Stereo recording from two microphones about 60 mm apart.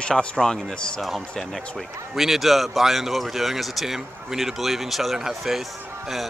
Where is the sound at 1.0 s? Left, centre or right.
Centre.